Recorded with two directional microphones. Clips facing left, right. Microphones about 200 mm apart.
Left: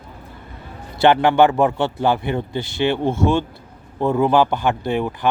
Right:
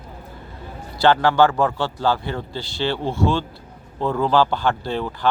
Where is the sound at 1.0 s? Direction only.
20° left (ahead or behind).